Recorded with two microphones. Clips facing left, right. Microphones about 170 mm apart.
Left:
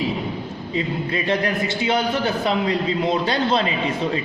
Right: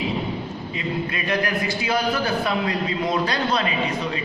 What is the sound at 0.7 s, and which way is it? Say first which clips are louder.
A man's voice: left 4 dB; 30° left (ahead or behind).